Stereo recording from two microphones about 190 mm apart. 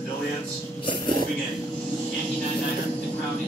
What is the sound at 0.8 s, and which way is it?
Speech, 25° left (ahead or behind).